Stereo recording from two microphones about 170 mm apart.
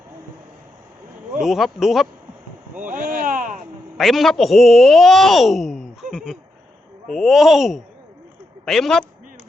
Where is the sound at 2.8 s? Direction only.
50° right (ahead or behind).